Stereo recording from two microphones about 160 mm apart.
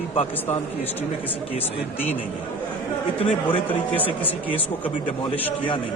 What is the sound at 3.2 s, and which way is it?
Speech, 35° left (ahead or behind).